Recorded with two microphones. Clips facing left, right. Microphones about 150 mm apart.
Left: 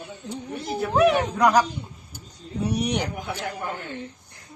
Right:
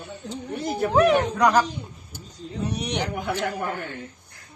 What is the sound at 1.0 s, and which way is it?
A woman's voice, 5° left (ahead or behind).